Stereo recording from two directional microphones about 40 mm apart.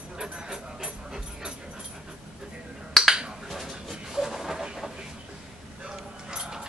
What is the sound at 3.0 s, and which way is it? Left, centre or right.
Finger snapping, centre.